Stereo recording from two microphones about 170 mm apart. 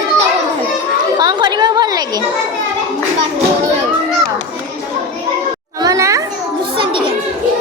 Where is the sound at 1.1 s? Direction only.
25° right (ahead or behind).